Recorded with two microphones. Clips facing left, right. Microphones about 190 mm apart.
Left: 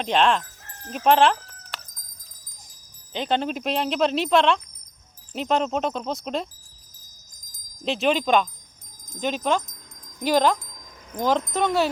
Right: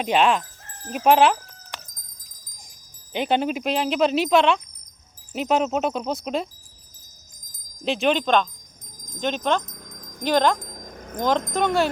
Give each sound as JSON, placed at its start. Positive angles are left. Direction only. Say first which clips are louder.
{"t": 0.0, "sound": "speech", "louder": "right 1 dB", "side_deg": -10}
{"t": 0.9, "sound": "a sound", "louder": "right 1 dB", "side_deg": -5}
{"t": 3.1, "sound": "speech", "louder": "right 2 dB", "side_deg": -10}
{"t": 7.9, "sound": "speech", "louder": "right 1 dB", "side_deg": 0}
{"t": 9.6, "sound": "keys jangling", "louder": "right 7 dB", "side_deg": -60}
{"t": 10.2, "sound": "speech", "louder": "even", "side_deg": 5}
{"t": 10.6, "sound": "wind chime", "louder": "right 9 dB", "side_deg": -50}
{"t": 11.2, "sound": "speech", "louder": "even", "side_deg": 5}